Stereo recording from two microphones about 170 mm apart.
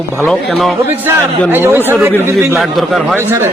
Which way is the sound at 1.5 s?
15° right (ahead or behind).